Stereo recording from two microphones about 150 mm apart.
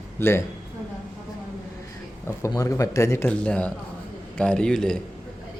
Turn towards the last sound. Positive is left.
turn(degrees=5)  # may be behind; listen again after turning